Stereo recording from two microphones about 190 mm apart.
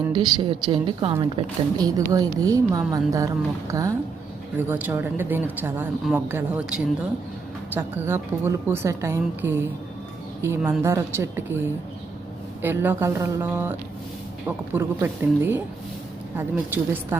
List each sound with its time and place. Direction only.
0.1 s a woman's voice: 20° right (ahead or behind)
12.6 s a woman's voice: 10° right (ahead or behind)
16.7 s a woman's voice: 10° right (ahead or behind)